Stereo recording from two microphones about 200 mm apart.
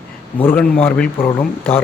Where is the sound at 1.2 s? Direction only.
25° left (ahead or behind).